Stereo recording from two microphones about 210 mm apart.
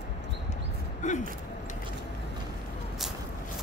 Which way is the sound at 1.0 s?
35° left (ahead or behind).